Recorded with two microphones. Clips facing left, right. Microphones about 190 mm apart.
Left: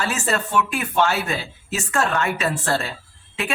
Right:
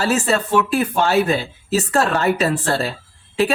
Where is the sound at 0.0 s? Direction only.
35° right (ahead or behind).